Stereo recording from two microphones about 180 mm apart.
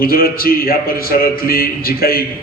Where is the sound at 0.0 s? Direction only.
55° left (ahead or behind).